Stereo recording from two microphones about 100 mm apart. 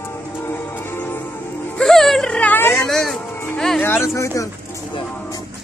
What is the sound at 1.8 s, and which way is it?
Speech, 5° left (ahead or behind).